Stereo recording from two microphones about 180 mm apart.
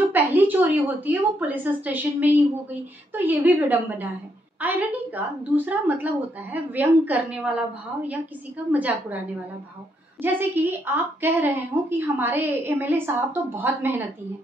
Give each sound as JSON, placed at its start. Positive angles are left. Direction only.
{"t": 0.1, "sound": "a woman's voice", "side_deg": -10}
{"t": 8.7, "sound": "a woman's voice", "side_deg": -10}
{"t": 10.2, "sound": "a woman's voice", "side_deg": -10}